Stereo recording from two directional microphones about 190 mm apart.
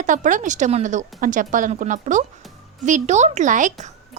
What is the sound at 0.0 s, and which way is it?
A woman's voice, 40° right (ahead or behind).